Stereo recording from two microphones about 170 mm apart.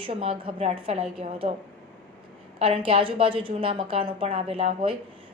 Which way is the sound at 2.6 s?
35° right (ahead or behind).